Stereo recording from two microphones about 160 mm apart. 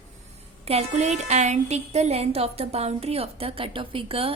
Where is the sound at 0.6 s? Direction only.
40° right (ahead or behind).